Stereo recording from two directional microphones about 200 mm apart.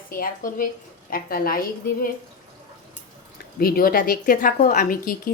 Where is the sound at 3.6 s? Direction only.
50° left (ahead or behind).